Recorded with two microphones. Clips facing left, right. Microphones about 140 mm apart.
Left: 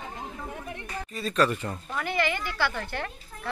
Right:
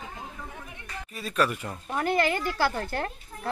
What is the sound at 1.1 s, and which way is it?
Speech, 10° right (ahead or behind).